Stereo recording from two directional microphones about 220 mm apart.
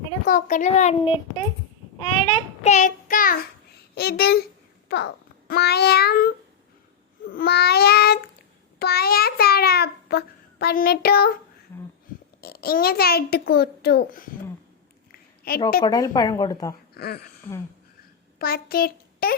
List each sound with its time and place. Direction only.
0.3 s a child's voice: 40° left (ahead or behind)
2.0 s child singing: 25° left (ahead or behind)
3.9 s a child's voice: 45° left (ahead or behind)
8.8 s child singing: 45° left (ahead or behind)
12.4 s a child's voice: 45° left (ahead or behind)
15.1 s a sound: 40° left (ahead or behind)
15.8 s speech: 15° left (ahead or behind)
16.9 s speech: 45° left (ahead or behind)
17.5 s speech: 10° left (ahead or behind)
18.3 s a child's voice: 45° left (ahead or behind)